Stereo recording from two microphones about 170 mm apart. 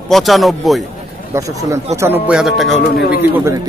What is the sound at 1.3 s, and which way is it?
Speech, 20° right (ahead or behind).